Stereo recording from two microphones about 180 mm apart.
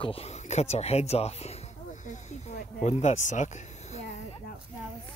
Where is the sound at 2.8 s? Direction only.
40° left (ahead or behind).